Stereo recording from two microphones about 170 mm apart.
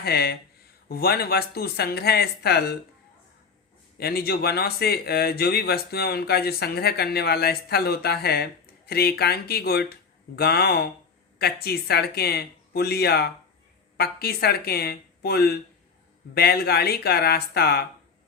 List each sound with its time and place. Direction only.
0.0 s speech: 70° left (ahead or behind)
3.9 s speech: 65° left (ahead or behind)